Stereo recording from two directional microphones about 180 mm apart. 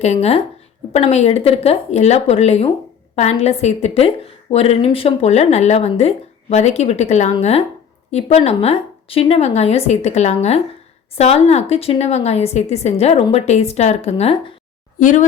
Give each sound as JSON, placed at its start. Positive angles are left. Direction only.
{"t": 0.0, "sound": "speech", "side_deg": 35}
{"t": 14.9, "sound": "speech", "side_deg": 45}